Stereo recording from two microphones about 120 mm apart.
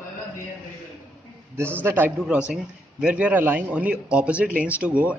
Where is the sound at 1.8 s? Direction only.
15° right (ahead or behind).